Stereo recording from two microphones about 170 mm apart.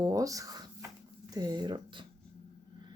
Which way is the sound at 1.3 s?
25° right (ahead or behind).